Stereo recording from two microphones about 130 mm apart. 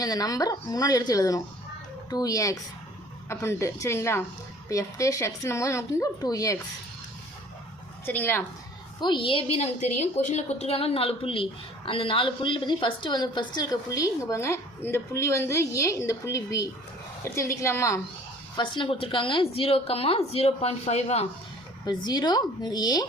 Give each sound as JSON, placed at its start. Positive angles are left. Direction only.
{"t": 0.0, "sound": "a woman's voice", "side_deg": 30}
{"t": 8.0, "sound": "a woman's voice", "side_deg": 15}
{"t": 9.0, "sound": "speech", "side_deg": 35}
{"t": 9.6, "sound": "a woman's voice", "side_deg": 60}
{"t": 18.5, "sound": "a woman's voice", "side_deg": 40}
{"t": 21.8, "sound": "speech", "side_deg": 35}